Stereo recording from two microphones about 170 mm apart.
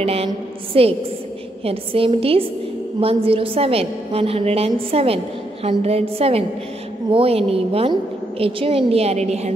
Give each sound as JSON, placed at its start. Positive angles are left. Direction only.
{"t": 0.0, "sound": "a woman's voice", "side_deg": -35}